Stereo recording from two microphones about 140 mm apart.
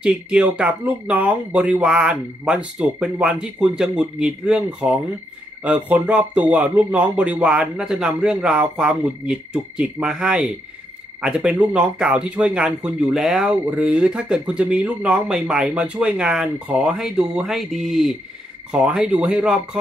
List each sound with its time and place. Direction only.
0.0 s speech: 5° right (ahead or behind)